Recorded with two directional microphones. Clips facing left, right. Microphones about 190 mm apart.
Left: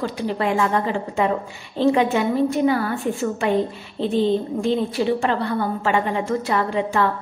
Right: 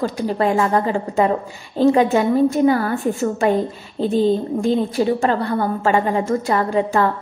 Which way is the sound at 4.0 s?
40° right (ahead or behind).